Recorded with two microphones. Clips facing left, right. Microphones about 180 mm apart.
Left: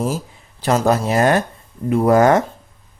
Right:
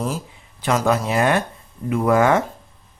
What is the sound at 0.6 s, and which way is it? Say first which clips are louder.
Speech: left 3 dB; 40° left (ahead or behind).